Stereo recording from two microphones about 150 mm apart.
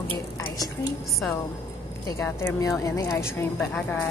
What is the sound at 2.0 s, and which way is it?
A woman's voice, 15° left (ahead or behind).